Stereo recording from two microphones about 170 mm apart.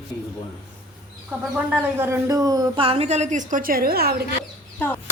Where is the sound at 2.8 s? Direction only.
35° right (ahead or behind); by 4.1 s 65° right (ahead or behind).